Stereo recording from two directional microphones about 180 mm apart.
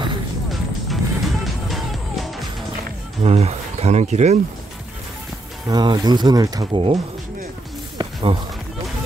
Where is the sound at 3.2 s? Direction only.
35° right (ahead or behind).